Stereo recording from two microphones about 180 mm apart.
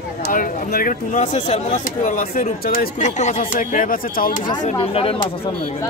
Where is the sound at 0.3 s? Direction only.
50° left (ahead or behind).